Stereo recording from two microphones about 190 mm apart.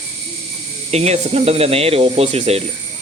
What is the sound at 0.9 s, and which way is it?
Speech, 35° right (ahead or behind).